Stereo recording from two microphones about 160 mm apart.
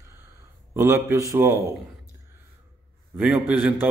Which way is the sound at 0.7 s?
15° right (ahead or behind).